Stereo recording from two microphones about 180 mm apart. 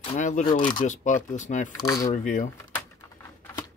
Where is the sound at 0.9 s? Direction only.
45° left (ahead or behind).